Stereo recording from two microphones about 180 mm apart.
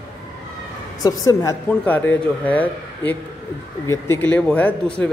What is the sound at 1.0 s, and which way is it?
Speech, 20° left (ahead or behind).